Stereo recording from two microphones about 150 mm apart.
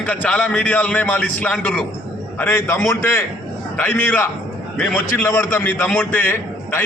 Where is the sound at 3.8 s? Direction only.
10° left (ahead or behind).